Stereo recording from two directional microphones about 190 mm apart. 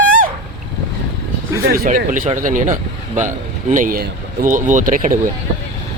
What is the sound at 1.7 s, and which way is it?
A man's voice, 50° right (ahead or behind).